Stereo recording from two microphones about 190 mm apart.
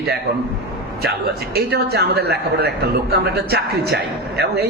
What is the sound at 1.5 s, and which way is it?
Speech, 55° right (ahead or behind).